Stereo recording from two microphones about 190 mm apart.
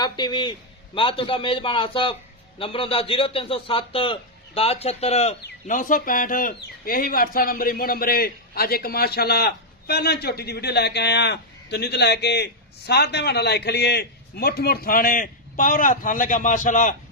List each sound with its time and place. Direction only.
0.0 s a man's voice: 20° left (ahead or behind); by 16.9 s 40° left (ahead or behind)